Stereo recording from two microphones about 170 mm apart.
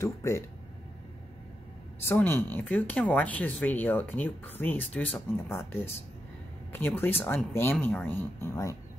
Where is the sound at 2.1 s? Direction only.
15° left (ahead or behind).